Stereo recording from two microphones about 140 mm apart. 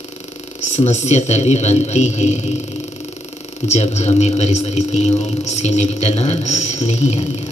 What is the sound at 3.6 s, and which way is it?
A man's voice, 50° left (ahead or behind).